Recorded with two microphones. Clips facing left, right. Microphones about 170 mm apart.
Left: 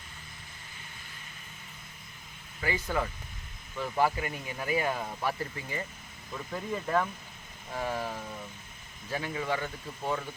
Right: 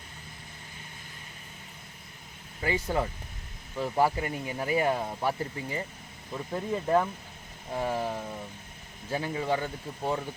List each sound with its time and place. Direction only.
2.6 s speech: 30° right (ahead or behind)